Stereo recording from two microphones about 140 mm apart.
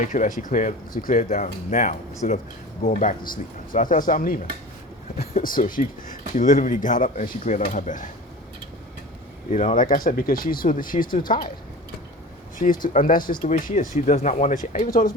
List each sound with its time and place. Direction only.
0.0 s speech: 65° left (ahead or behind); by 4.4 s 85° left
5.4 s speech: 80° left; by 8.1 s 65° left (ahead or behind)
9.5 s speech: 60° left (ahead or behind); by 11.3 s 80° left
12.5 s speech: 70° left (ahead or behind)
13.5 s speech: 65° left (ahead or behind); by 15.1 s 90° left